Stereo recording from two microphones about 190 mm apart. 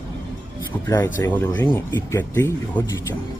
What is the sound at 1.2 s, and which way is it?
Speech, 10° left (ahead or behind).